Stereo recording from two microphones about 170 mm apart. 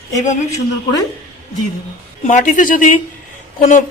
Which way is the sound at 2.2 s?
50° left (ahead or behind).